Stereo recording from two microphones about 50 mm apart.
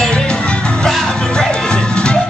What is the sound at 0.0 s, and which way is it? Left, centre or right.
Music, centre.